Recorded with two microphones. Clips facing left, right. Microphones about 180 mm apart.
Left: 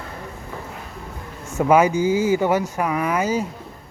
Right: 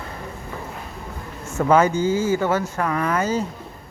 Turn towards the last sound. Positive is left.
turn(degrees=10)  # may be behind; listen again after turning